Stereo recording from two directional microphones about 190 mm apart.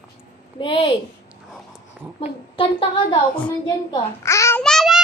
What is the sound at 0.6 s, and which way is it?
Speech, 25° left (ahead or behind).